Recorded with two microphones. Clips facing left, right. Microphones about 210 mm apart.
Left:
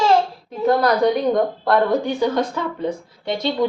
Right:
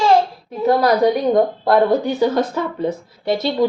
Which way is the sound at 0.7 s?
10° right (ahead or behind).